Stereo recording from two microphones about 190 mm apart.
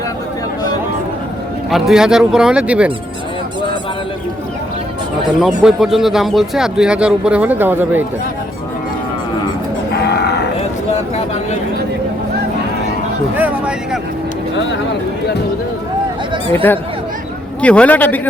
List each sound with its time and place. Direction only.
1.7 s speech: 5° right (ahead or behind)
5.4 s speech: 5° right (ahead or behind)
9.9 s livestock: 60° left (ahead or behind)
13.3 s speech: 5° right (ahead or behind)
17.6 s a man's voice: 5° left (ahead or behind)